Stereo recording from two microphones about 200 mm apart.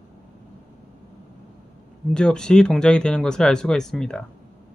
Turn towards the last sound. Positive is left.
turn(degrees=5)  # may be behind; listen again after turning